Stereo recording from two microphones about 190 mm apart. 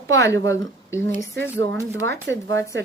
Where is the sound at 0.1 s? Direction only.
15° left (ahead or behind).